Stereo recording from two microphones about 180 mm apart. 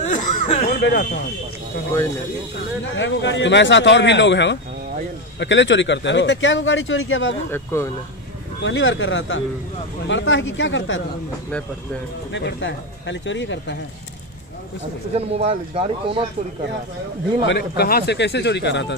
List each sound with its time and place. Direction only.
0.1 s a sound: 40° left (ahead or behind)
0.7 s a sound: 65° left (ahead or behind)
3.0 s a man's voice: 85° left
5.4 s speech: 90° left
7.5 s speech: 15° left (ahead or behind)
8.6 s speech: 90° left
12.3 s speech: 80° left
15.1 s speech: 35° right (ahead or behind)
17.5 s speech: 65° left (ahead or behind)